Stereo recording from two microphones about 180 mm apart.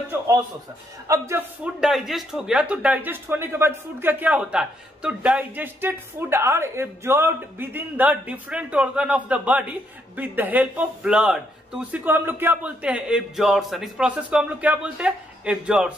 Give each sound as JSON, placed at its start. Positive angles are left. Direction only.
{"t": 0.1, "sound": "music", "side_deg": -20}
{"t": 1.0, "sound": "speech", "side_deg": -15}
{"t": 1.6, "sound": "speech", "side_deg": 0}